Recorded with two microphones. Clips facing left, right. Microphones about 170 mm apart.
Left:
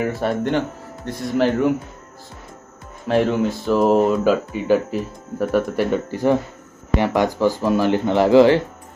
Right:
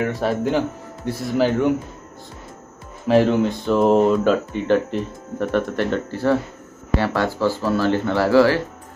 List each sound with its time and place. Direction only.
0.0 s speech: centre (ahead or behind)
3.1 s speech: centre (ahead or behind); by 8.5 s 20° left (ahead or behind)